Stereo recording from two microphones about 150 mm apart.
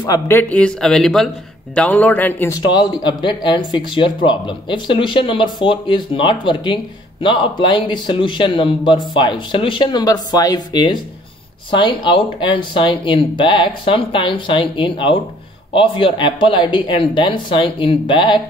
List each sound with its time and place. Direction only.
0.0 s speech: 25° left (ahead or behind)
0.4 s speech: 10° left (ahead or behind)
2.6 s speech: 30° left (ahead or behind)